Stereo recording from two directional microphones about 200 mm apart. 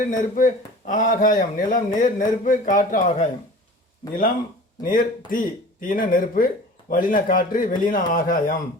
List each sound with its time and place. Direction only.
0.0 s a man's voice: 40° left (ahead or behind)
4.8 s speech: 45° left (ahead or behind)